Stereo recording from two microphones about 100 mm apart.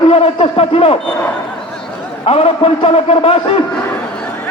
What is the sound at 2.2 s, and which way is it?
A man's voice, 70° left (ahead or behind).